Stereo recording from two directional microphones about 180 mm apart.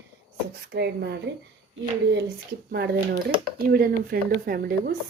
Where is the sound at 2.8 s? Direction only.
65° right (ahead or behind).